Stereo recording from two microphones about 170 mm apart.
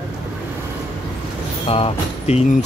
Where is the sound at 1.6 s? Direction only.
35° left (ahead or behind).